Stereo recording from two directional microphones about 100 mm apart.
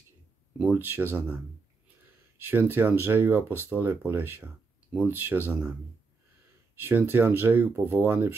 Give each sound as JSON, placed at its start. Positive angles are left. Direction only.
{"t": 0.6, "sound": "speech", "side_deg": -10}
{"t": 0.8, "sound": "speech", "side_deg": -20}
{"t": 2.3, "sound": "speech", "side_deg": -20}
{"t": 6.7, "sound": "speech", "side_deg": -20}